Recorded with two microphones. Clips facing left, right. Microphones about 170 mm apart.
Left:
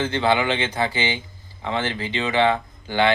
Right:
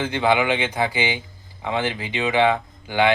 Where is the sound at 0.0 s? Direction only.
15° right (ahead or behind).